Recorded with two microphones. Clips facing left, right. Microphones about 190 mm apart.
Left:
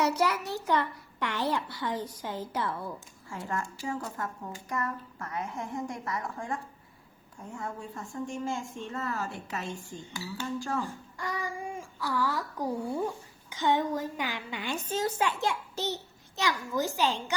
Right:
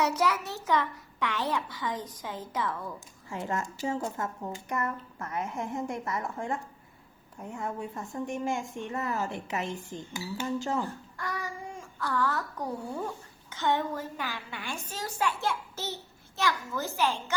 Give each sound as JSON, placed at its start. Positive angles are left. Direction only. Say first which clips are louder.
{"t": 0.0, "sound": "a child's voice", "louder": "even", "side_deg": 10}
{"t": 3.2, "sound": "speech", "louder": "right 2 dB", "side_deg": -20}
{"t": 10.8, "sound": "a child's voice", "louder": "even", "side_deg": 15}